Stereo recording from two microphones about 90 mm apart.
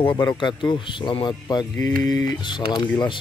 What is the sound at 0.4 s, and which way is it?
Speech, 60° left (ahead or behind).